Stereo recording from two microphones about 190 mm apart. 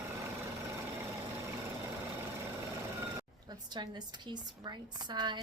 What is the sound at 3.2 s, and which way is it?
Speech, 20° right (ahead or behind).